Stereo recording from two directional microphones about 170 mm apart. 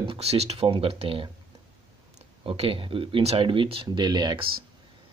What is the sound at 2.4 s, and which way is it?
Speech, 30° right (ahead or behind).